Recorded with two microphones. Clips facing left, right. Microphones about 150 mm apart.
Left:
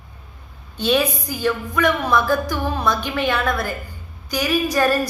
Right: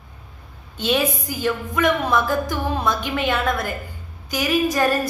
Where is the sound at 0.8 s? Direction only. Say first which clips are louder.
Left 2 dB; 20° right (ahead or behind).